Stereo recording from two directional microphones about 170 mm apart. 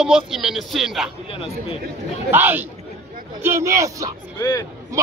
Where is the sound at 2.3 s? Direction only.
10° right (ahead or behind).